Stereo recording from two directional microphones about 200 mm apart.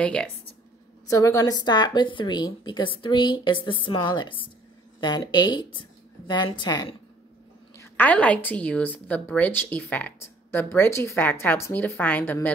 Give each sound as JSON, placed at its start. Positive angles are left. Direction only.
{"t": 0.0, "sound": "speech", "side_deg": 5}
{"t": 1.0, "sound": "speech", "side_deg": 15}
{"t": 7.7, "sound": "a woman's voice", "side_deg": 10}